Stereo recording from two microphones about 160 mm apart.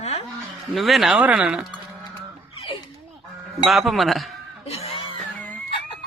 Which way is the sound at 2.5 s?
35° left (ahead or behind).